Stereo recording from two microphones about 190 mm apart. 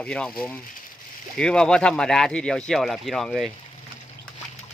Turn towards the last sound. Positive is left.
turn(degrees=0)  # may be behind; listen again after turning